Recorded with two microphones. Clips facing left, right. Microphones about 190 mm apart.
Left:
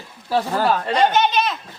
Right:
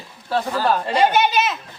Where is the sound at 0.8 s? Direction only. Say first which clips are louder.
Even; 10° right (ahead or behind).